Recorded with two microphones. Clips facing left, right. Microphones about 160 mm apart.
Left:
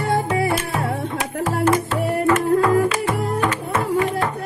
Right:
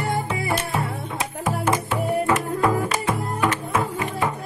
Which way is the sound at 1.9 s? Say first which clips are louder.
Left 3 dB; 10° right (ahead or behind).